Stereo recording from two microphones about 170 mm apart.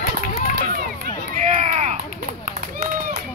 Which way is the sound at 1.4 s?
45° right (ahead or behind).